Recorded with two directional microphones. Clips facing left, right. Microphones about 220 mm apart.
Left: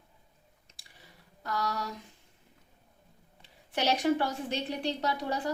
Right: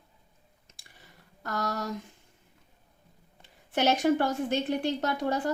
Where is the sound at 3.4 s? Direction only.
50° right (ahead or behind).